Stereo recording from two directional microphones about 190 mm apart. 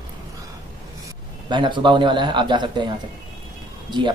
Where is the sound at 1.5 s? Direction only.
25° right (ahead or behind).